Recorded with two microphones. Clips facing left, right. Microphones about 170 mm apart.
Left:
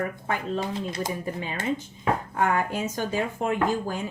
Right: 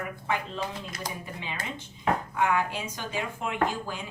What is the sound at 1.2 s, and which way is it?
Speech, 45° left (ahead or behind).